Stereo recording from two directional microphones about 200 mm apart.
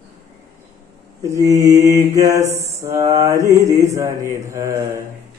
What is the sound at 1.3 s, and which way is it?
Mantra, 15° right (ahead or behind).